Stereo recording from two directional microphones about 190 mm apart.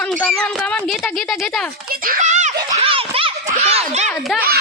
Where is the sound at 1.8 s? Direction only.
50° right (ahead or behind).